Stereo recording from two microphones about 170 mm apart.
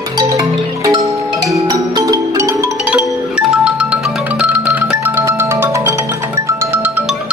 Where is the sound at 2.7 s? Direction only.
5° right (ahead or behind).